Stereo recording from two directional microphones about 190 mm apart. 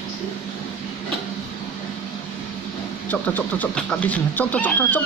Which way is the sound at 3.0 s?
10° left (ahead or behind).